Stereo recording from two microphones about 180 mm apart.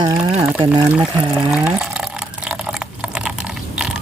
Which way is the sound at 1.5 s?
Centre (ahead or behind).